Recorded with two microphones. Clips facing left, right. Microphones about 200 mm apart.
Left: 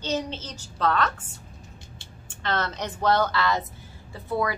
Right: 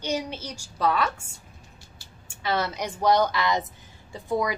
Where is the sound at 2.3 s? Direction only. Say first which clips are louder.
Right 1 dB; 10° right (ahead or behind).